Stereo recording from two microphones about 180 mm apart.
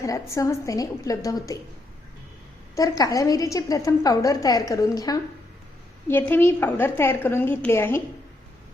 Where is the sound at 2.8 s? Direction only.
20° left (ahead or behind).